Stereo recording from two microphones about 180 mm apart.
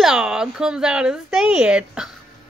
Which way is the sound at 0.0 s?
5° right (ahead or behind).